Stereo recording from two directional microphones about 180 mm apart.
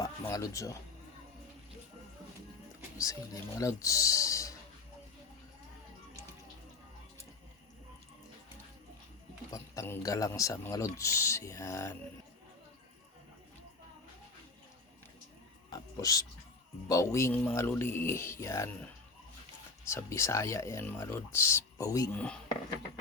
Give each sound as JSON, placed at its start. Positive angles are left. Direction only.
{"t": 0.0, "sound": "speech", "side_deg": 20}
{"t": 3.0, "sound": "speech", "side_deg": 20}
{"t": 9.5, "sound": "speech", "side_deg": 15}
{"t": 16.0, "sound": "speech", "side_deg": 20}
{"t": 19.9, "sound": "speech", "side_deg": 15}